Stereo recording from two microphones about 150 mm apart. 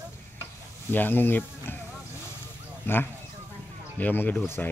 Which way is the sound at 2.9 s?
15° left (ahead or behind).